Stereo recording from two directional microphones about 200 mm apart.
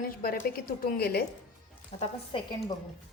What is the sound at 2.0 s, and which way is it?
Speech, 25° left (ahead or behind).